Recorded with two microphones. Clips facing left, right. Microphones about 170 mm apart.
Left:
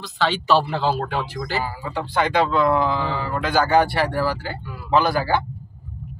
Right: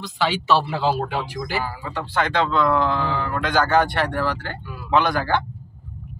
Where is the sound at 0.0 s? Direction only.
15° right (ahead or behind).